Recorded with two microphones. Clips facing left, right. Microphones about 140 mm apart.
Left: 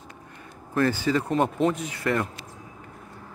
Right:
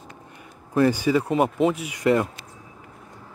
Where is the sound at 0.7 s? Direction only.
15° right (ahead or behind).